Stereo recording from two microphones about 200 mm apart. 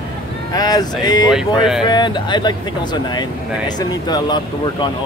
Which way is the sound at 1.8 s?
20° left (ahead or behind).